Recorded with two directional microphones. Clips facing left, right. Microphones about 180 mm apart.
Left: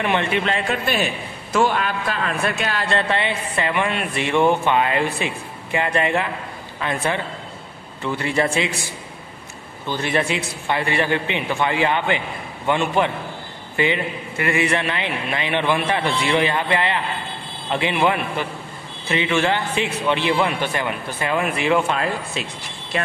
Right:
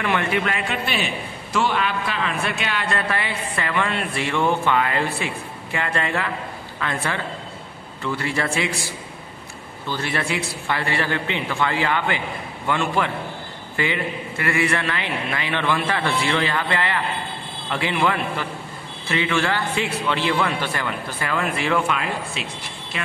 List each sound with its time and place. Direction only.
0.0 s speech: 20° left (ahead or behind)
1.5 s speech: 45° left (ahead or behind); by 8.7 s 20° left (ahead or behind)
9.8 s speech: 20° left (ahead or behind)
21.8 s speech: 40° left (ahead or behind)